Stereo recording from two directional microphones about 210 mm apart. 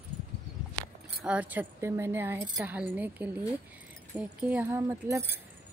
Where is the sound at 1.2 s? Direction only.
5° right (ahead or behind).